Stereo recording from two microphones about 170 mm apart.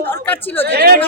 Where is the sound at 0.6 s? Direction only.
70° right (ahead or behind).